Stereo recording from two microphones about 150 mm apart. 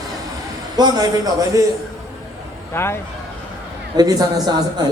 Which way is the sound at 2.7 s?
15° left (ahead or behind).